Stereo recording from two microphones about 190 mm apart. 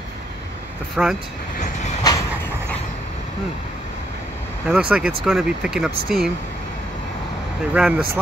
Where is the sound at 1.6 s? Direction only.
35° left (ahead or behind).